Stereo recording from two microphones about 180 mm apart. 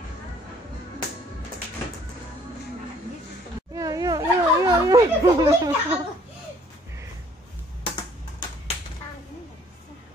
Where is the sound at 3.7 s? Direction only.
20° right (ahead or behind).